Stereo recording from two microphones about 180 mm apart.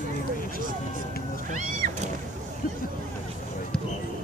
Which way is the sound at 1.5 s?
45° right (ahead or behind).